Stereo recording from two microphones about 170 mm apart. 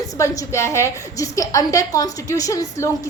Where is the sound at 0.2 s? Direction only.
15° left (ahead or behind).